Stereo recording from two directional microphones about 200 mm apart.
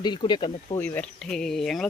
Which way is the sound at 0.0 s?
20° left (ahead or behind).